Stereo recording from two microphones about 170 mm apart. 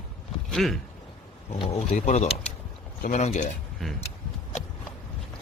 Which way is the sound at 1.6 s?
40° left (ahead or behind).